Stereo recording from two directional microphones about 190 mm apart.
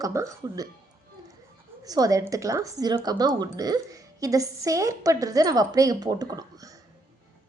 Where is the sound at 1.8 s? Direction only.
20° right (ahead or behind).